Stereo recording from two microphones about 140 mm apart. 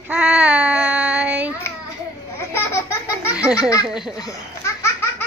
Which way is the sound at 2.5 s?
20° left (ahead or behind).